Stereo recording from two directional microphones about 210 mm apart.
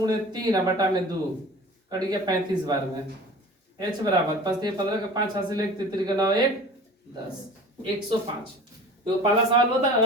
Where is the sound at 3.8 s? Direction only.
20° right (ahead or behind).